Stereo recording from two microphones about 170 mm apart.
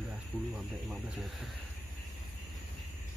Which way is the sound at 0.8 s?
Centre (ahead or behind).